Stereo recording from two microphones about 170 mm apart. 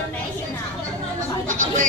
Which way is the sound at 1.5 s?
50° right (ahead or behind).